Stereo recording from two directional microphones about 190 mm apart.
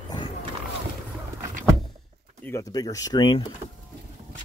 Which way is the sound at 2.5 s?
20° left (ahead or behind).